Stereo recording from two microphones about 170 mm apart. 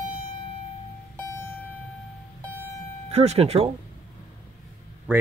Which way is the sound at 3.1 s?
40° right (ahead or behind).